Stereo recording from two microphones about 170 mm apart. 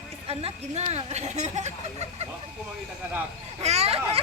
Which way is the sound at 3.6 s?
40° right (ahead or behind).